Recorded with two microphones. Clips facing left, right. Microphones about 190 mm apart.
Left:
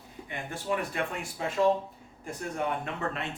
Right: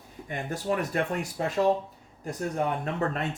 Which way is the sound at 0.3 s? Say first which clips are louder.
Right 3 dB; 40° right (ahead or behind).